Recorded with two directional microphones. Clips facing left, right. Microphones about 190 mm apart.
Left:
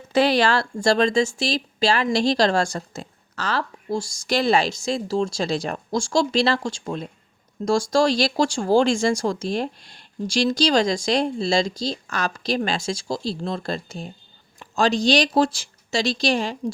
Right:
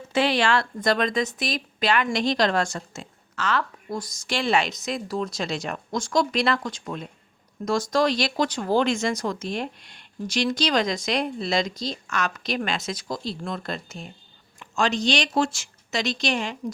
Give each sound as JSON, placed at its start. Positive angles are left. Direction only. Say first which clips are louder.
{"t": 0.1, "sound": "speech", "louder": "left 3 dB", "side_deg": 35}